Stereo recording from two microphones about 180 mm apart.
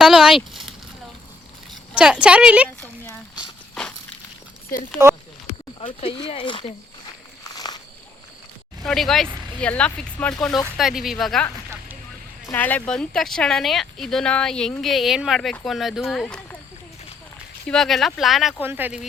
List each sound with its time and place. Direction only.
0.0 s speech: centre (ahead or behind)
2.0 s speech: 5° right (ahead or behind)
2.8 s a sound: 10° left (ahead or behind)
5.5 s speech: 35° left (ahead or behind)
7.4 s a sound: 20° left (ahead or behind)
8.8 s speech: centre (ahead or behind)
17.7 s speech: centre (ahead or behind)